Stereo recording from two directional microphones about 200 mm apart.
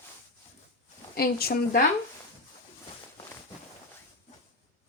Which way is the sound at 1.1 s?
50° left (ahead or behind).